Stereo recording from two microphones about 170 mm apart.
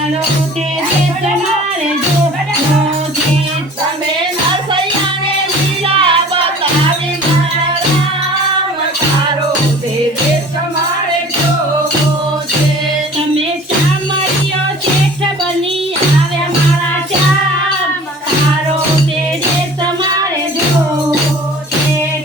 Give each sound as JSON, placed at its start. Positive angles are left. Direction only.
{"t": 5.9, "sound": "music", "side_deg": -30}